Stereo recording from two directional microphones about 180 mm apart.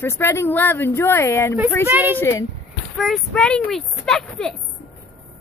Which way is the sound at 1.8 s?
10° right (ahead or behind).